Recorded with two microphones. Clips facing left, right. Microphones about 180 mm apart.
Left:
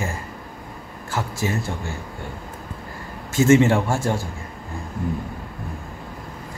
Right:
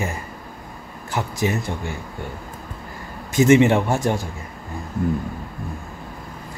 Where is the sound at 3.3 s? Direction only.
15° right (ahead or behind).